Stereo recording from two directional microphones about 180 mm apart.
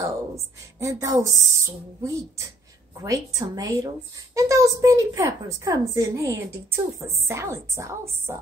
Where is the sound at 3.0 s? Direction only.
20° right (ahead or behind).